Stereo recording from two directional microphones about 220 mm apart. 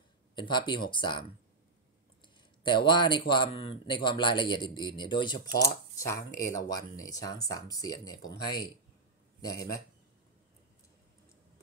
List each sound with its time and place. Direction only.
0.4 s speech: 20° left (ahead or behind)
2.2 s speech: 20° left (ahead or behind)